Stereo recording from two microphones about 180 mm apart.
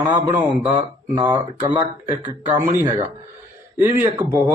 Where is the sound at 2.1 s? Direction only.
15° right (ahead or behind).